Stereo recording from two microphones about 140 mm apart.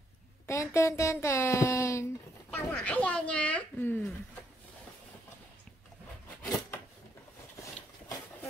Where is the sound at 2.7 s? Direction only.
10° left (ahead or behind).